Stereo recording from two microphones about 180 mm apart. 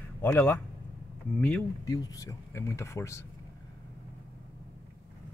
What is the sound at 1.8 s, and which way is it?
Speech, 20° left (ahead or behind).